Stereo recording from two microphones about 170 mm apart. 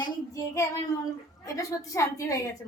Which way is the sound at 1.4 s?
20° left (ahead or behind).